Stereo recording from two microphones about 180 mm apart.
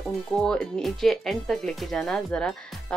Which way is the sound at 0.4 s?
5° left (ahead or behind).